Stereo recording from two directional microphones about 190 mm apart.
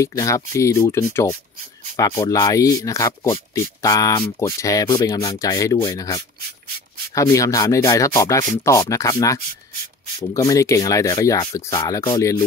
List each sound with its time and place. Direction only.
0.0 s speech: 15° left (ahead or behind)